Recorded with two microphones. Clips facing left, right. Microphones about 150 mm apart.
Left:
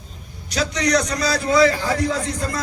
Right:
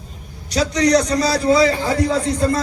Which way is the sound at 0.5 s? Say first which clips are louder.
Right 5 dB; 35° right (ahead or behind).